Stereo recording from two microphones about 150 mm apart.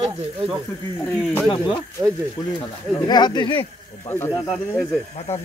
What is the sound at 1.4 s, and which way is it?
Speech, 30° left (ahead or behind).